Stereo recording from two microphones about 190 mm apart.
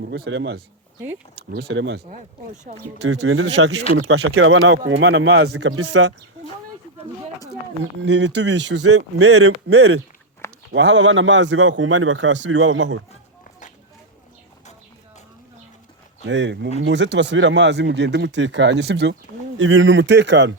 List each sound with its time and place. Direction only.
0.1 s speech: 70° right (ahead or behind)
1.5 s speech: 55° right (ahead or behind)
2.7 s speech: 45° right (ahead or behind)
3.0 s speech: 70° right (ahead or behind)
3.9 s speech: 90° right
4.9 s a man's voice: 75° right (ahead or behind)
8.0 s speech: 65° right (ahead or behind)
9.6 s speech: 90° right
10.7 s a man's voice: 75° right (ahead or behind)
16.2 s speech: 75° right (ahead or behind)
19.5 s speech: 85° right; by 20.6 s 70° right (ahead or behind)